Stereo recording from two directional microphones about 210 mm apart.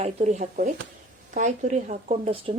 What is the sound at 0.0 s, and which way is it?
Speech, 35° right (ahead or behind).